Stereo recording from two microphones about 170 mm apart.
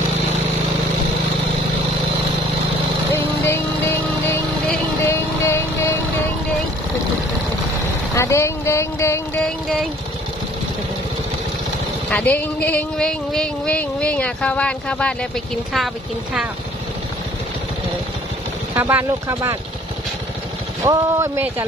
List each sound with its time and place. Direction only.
3.1 s music: 15° left (ahead or behind)
8.1 s a sound: 15° left (ahead or behind)
12.1 s speech: 10° left (ahead or behind)
18.8 s speech: 10° right (ahead or behind)
20.8 s speech: 15° right (ahead or behind)